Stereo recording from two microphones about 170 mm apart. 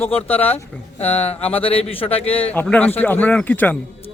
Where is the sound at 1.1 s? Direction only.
40° left (ahead or behind).